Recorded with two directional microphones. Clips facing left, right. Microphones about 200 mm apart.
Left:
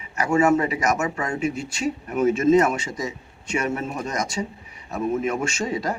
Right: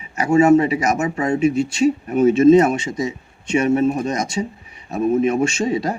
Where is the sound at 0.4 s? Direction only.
25° right (ahead or behind).